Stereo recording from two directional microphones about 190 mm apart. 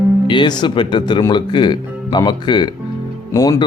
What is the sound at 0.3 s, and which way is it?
Speech, 25° left (ahead or behind).